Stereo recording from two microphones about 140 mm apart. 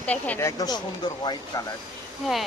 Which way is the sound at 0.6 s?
30° left (ahead or behind).